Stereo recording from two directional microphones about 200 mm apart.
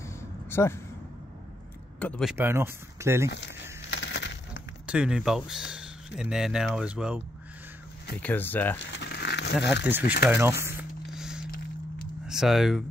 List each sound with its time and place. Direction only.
0.0 s a sound: 15° left (ahead or behind)
2.0 s speech: 5° left (ahead or behind)
2.3 s speech: 10° right (ahead or behind)
3.3 s speech: 60° left (ahead or behind)
3.9 s coin: 60° left (ahead or behind)
4.8 s speech: 5° right (ahead or behind)
8.2 s speech: 10° left (ahead or behind)
8.7 s a sound: 60° left (ahead or behind)
9.8 s speech: 10° right (ahead or behind)
11.1 s a sound: 5° right (ahead or behind)
12.3 s speech: centre (ahead or behind)